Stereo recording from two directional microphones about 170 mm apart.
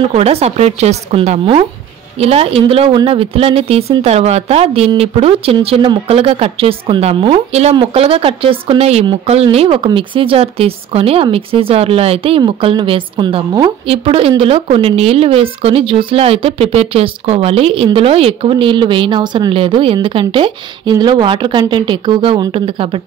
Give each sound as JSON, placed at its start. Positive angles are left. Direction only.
{"t": 0.1, "sound": "speech", "side_deg": -40}